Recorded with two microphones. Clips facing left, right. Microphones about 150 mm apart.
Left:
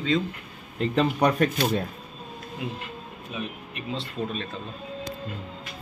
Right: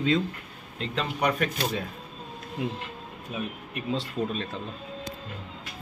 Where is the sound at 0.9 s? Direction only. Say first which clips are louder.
Left 5 dB; 40° left (ahead or behind).